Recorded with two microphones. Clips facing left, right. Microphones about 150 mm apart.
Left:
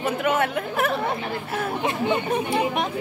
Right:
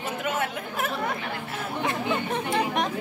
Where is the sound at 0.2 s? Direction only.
65° left (ahead or behind).